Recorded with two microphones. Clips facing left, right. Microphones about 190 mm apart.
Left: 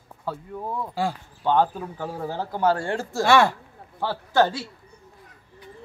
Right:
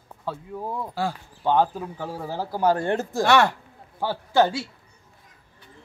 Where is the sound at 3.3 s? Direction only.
5° left (ahead or behind).